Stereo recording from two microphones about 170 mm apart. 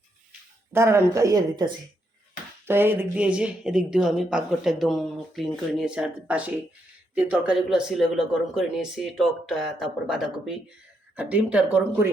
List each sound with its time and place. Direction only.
0.7 s speech: 15° right (ahead or behind)
2.6 s speech: 15° right (ahead or behind)